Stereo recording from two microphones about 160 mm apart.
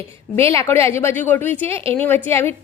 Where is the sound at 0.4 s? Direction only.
15° left (ahead or behind).